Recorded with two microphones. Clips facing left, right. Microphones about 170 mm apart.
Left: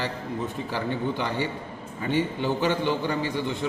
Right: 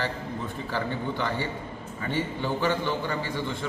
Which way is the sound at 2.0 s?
20° left (ahead or behind).